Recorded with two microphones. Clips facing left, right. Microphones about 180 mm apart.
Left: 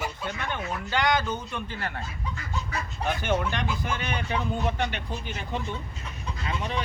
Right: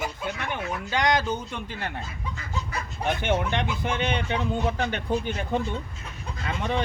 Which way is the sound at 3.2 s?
20° right (ahead or behind).